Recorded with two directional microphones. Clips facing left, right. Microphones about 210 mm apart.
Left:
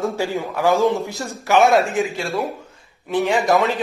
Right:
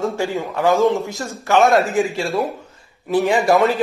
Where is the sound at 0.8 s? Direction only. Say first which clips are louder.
Right 2 dB; 15° right (ahead or behind).